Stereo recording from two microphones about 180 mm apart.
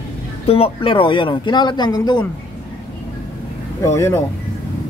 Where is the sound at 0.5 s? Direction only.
30° left (ahead or behind).